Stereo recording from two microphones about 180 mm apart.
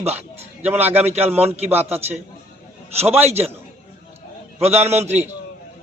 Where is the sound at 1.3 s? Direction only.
35° right (ahead or behind).